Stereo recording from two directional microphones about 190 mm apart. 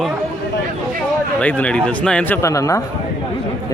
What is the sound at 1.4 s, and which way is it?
Speech, 5° left (ahead or behind).